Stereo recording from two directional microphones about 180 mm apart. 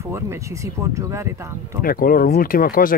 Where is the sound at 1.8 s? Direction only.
55° left (ahead or behind).